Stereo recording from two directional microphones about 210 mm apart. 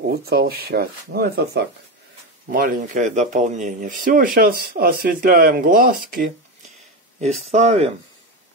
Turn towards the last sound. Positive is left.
turn(degrees=-30)  # may be behind; listen again after turning